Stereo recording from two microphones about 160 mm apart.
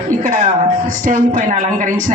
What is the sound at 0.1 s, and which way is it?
Music, 55° right (ahead or behind).